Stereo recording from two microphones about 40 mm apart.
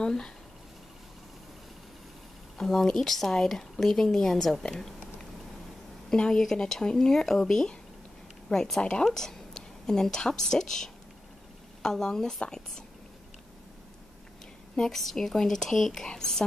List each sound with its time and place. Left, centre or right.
0.0 s speech: centre
2.5 s speech: centre
6.0 s a woman's voice: centre
14.8 s speech: centre